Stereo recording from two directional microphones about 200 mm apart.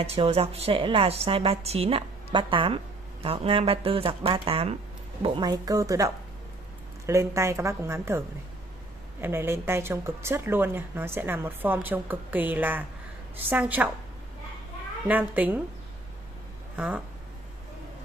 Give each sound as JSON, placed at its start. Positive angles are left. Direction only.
{"t": 0.0, "sound": "a woman's voice", "side_deg": -30}
{"t": 9.2, "sound": "a woman's voice", "side_deg": -10}
{"t": 15.0, "sound": "a woman's voice", "side_deg": -10}
{"t": 16.7, "sound": "speech", "side_deg": -5}